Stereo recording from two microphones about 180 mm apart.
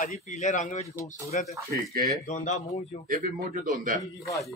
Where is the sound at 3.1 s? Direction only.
45° right (ahead or behind).